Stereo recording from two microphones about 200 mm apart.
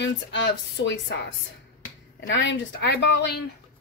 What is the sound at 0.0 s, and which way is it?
Speech, 65° left (ahead or behind).